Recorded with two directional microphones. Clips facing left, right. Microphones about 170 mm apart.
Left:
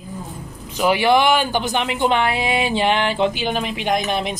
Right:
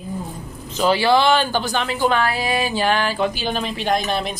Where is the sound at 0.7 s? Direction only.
15° left (ahead or behind).